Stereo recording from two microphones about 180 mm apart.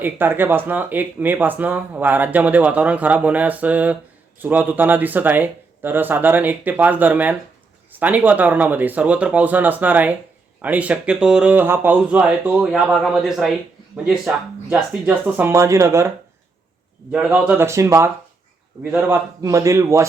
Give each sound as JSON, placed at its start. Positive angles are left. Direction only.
{"t": 0.0, "sound": "speech", "side_deg": -10}